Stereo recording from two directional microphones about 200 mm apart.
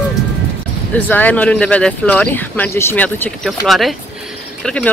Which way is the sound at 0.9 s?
10° left (ahead or behind).